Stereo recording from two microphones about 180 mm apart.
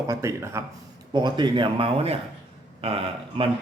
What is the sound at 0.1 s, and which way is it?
A man's voice, 15° right (ahead or behind).